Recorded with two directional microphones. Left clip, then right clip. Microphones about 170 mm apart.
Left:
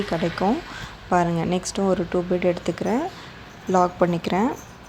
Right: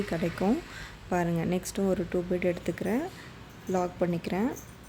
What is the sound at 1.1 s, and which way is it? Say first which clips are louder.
Speech: left 8 dB; 10° right (ahead or behind).